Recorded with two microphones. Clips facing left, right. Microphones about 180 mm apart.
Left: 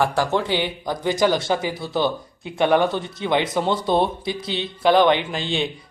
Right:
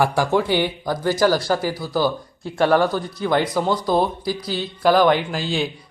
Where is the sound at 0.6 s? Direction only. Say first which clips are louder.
Right 2 dB; 15° left (ahead or behind).